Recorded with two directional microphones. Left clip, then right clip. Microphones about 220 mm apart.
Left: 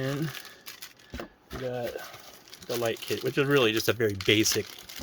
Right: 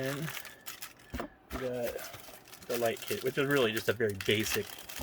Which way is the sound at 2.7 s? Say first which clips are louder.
Left 3 dB; 50° left (ahead or behind).